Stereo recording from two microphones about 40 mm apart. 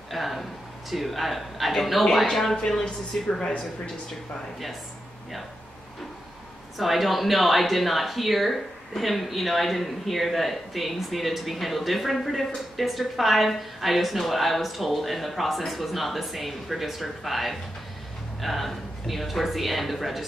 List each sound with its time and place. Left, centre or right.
0.1 s a man's voice: centre; by 3.9 s left
6.8 s speech: centre